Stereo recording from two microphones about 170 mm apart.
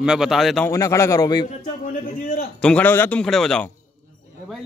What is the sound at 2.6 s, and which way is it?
A man's voice, 10° left (ahead or behind).